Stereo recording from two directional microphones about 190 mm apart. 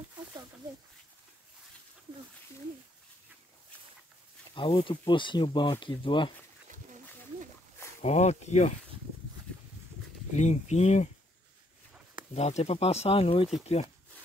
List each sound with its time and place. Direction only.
4.6 s speech: 25° left (ahead or behind)
8.0 s speech: 35° left (ahead or behind)
10.3 s speech: 35° left (ahead or behind)
12.4 s speech: 35° left (ahead or behind)